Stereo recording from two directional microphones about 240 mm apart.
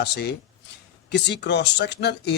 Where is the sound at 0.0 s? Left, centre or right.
Left.